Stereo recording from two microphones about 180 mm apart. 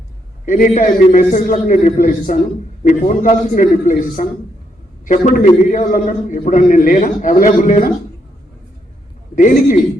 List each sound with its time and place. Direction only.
0.4 s a man's voice: 45° left (ahead or behind)
9.3 s a man's voice: 45° left (ahead or behind)